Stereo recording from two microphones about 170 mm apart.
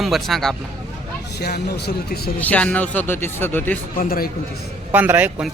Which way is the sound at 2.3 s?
10° left (ahead or behind).